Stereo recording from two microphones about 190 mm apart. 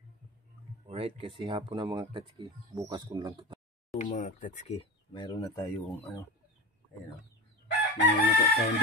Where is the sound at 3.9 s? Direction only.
40° left (ahead or behind); by 5.6 s 25° left (ahead or behind).